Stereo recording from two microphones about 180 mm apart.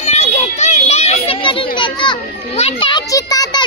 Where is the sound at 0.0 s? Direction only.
35° left (ahead or behind).